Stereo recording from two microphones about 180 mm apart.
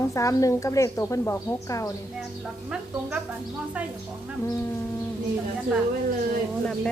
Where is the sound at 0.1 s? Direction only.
20° left (ahead or behind).